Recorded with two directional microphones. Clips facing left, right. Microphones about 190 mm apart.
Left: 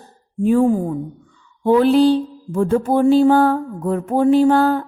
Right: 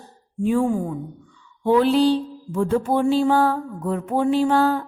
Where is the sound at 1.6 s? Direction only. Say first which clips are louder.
Left 4 dB; 50° left (ahead or behind).